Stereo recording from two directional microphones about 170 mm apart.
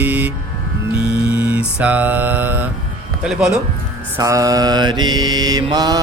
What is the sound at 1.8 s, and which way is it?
Mantra, 10° right (ahead or behind).